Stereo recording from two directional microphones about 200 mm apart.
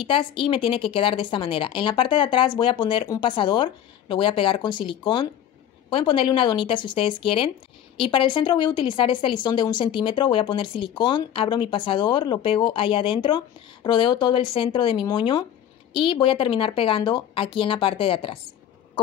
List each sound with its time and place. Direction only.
0.0 s a woman's voice: 25° left (ahead or behind)